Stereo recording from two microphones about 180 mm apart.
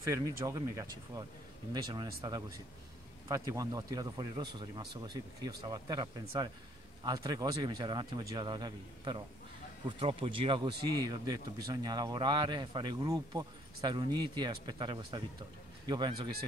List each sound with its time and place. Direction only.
0.1 s speech: 20° right (ahead or behind)